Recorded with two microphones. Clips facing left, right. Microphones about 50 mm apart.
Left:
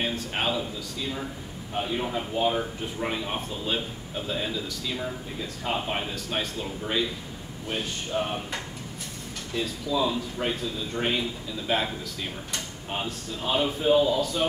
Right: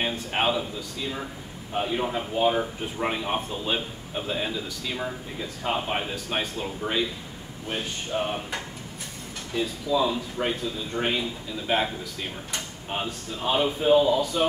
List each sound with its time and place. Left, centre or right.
0.0 s speech: centre
1.7 s a man's voice: centre
7.7 s speech: centre
9.8 s speech: centre
12.9 s speech: centre